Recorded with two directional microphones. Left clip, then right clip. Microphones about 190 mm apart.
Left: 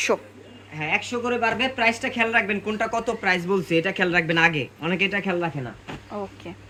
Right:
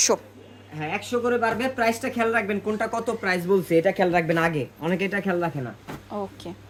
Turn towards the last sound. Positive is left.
turn(degrees=-5)  # may be behind; listen again after turning